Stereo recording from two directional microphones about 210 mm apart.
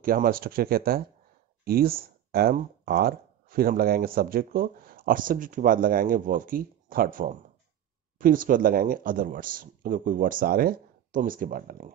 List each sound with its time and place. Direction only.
0.0 s speech: 45° right (ahead or behind)